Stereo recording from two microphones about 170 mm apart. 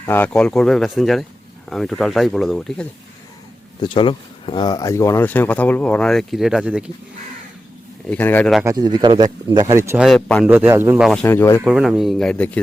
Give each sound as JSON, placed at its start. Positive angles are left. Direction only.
{"t": 0.0, "sound": "speech", "side_deg": 10}
{"t": 3.8, "sound": "speech", "side_deg": 30}
{"t": 8.1, "sound": "speech", "side_deg": 10}
{"t": 8.6, "sound": "speech", "side_deg": -25}
{"t": 10.0, "sound": "speech", "side_deg": 0}
{"t": 10.4, "sound": "a man's voice", "side_deg": -10}
{"t": 11.0, "sound": "speech", "side_deg": 0}
{"t": 11.3, "sound": "speech", "side_deg": 15}
{"t": 11.6, "sound": "speech", "side_deg": -5}